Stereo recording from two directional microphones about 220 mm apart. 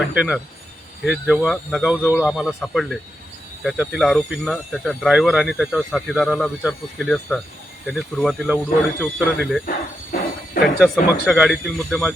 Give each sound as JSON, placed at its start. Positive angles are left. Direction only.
{"t": 0.1, "sound": "speech", "side_deg": -5}
{"t": 9.6, "sound": "a sound", "side_deg": 40}
{"t": 10.8, "sound": "speech", "side_deg": 0}